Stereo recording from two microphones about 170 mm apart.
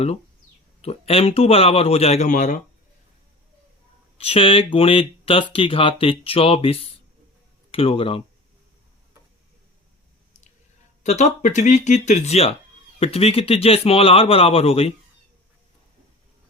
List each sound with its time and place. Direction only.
0.8 s speech: 35° left (ahead or behind)
4.2 s speech: 35° left (ahead or behind)
11.0 s speech: 45° left (ahead or behind)